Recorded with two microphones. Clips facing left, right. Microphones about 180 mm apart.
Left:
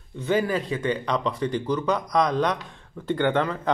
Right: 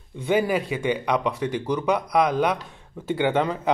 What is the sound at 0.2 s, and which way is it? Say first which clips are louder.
Speech: right 2 dB; 10° right (ahead or behind).